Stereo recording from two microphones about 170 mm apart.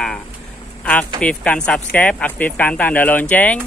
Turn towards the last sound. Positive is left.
turn(degrees=10)  # may be behind; listen again after turning